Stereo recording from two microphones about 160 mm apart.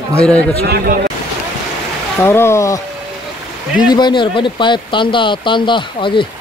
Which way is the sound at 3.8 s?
25° left (ahead or behind).